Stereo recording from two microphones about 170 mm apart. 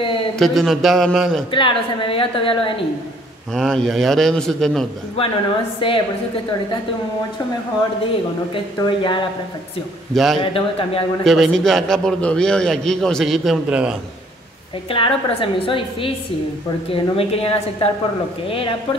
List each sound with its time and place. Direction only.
0.4 s a man's voice: centre (ahead or behind)
1.5 s a woman's voice: 30° left (ahead or behind)
3.5 s a man's voice: centre (ahead or behind)
5.2 s a woman's voice: 35° left (ahead or behind)
8.8 s speech: 25° left (ahead or behind)
10.1 s a man's voice: centre (ahead or behind)
10.4 s a woman's voice: 30° left (ahead or behind)
11.2 s a man's voice: centre (ahead or behind)
14.9 s a woman's voice: 30° left (ahead or behind)